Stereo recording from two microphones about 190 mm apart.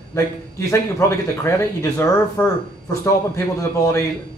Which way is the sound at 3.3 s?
15° left (ahead or behind).